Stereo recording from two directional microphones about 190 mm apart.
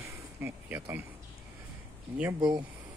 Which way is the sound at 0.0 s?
10° right (ahead or behind).